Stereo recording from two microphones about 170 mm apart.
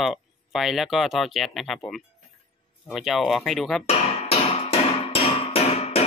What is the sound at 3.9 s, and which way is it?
Music, 35° left (ahead or behind).